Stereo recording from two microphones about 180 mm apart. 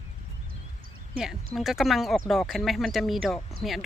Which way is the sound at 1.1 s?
Centre (ahead or behind).